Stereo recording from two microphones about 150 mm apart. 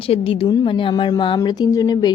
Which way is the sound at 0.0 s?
40° left (ahead or behind).